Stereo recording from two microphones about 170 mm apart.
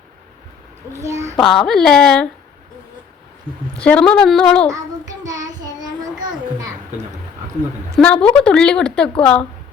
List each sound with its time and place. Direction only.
0.9 s a child's voice: 15° right (ahead or behind)
1.4 s a woman's voice: centre (ahead or behind)
3.8 s a woman's voice: 5° left (ahead or behind)
5.2 s child singing: 20° right (ahead or behind)
7.9 s a woman's voice: 5° left (ahead or behind)